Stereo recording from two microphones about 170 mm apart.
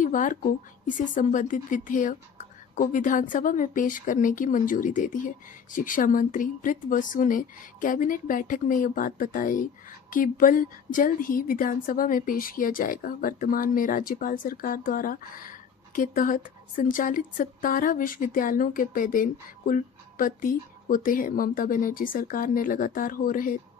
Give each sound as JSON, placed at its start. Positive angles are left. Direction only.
{"t": 0.0, "sound": "a woman's voice", "side_deg": 50}